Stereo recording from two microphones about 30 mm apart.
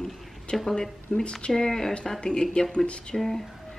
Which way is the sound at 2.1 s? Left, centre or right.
Left.